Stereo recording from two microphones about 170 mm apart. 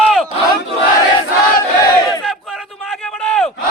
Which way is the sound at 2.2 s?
Centre (ahead or behind).